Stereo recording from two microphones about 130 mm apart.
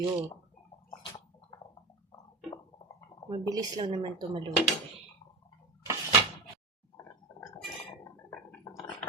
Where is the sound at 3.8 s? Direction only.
35° right (ahead or behind).